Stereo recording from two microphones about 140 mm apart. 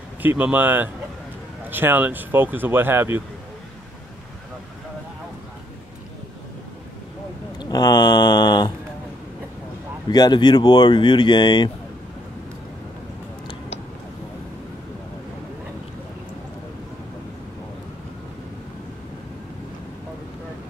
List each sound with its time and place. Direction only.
0.2 s speech: 10° right (ahead or behind)
7.5 s speech: 30° left (ahead or behind)
10.0 s speech: 30° left (ahead or behind)